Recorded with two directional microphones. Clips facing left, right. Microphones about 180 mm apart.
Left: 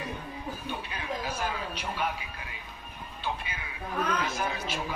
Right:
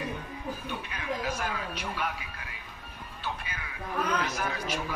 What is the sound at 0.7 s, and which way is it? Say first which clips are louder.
Music: even; 30° left (ahead or behind).